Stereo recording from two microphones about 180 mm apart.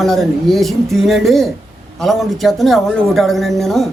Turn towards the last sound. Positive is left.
turn(degrees=0)  # may be behind; listen again after turning